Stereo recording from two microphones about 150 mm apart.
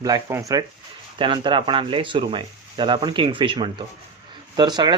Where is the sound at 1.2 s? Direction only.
35° right (ahead or behind).